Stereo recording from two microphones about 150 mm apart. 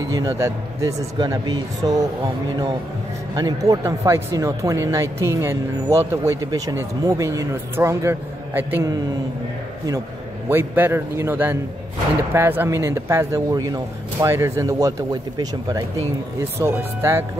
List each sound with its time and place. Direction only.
0.1 s speech: 20° right (ahead or behind)
3.3 s speech: 25° right (ahead or behind)
10.5 s a man's voice: 15° right (ahead or behind)